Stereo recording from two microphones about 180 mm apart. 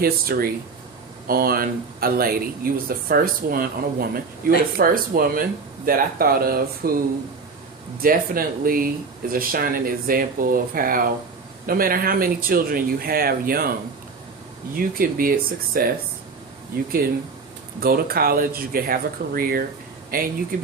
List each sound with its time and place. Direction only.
0.0 s speech: 55° right (ahead or behind)
8.0 s speech: 55° right (ahead or behind)
14.8 s speech: 55° right (ahead or behind)
17.7 s speech: 55° right (ahead or behind)